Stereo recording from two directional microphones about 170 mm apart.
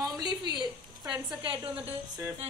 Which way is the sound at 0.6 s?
25° right (ahead or behind).